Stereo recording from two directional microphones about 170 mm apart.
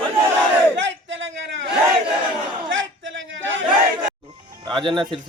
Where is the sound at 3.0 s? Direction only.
90° right.